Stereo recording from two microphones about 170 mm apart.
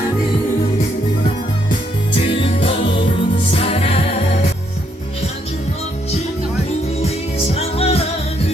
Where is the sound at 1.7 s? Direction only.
30° left (ahead or behind).